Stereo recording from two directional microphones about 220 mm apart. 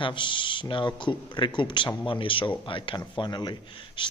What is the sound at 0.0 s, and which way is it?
A man's voice, 20° left (ahead or behind).